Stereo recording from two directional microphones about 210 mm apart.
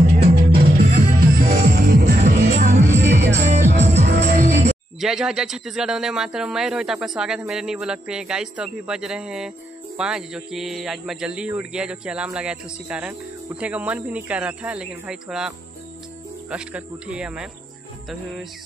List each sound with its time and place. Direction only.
0.2 s music: 45° right (ahead or behind)
3.0 s music: 55° right (ahead or behind)
3.4 s music: 35° right (ahead or behind)
5.0 s speech: centre (ahead or behind)